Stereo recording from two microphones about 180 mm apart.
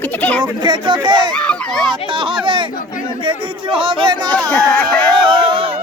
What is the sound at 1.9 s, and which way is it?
Speech, 30° right (ahead or behind).